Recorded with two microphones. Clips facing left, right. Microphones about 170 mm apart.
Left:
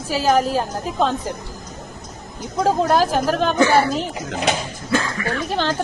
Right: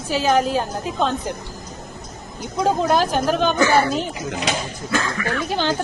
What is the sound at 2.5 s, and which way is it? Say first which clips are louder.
A woman's voice: left 1 dB; centre (ahead or behind).